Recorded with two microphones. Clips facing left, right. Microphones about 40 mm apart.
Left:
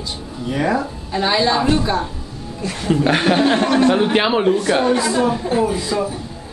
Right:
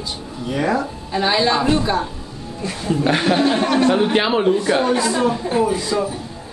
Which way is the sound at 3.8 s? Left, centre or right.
Centre.